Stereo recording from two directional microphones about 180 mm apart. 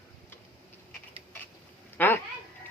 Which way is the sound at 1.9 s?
10° left (ahead or behind).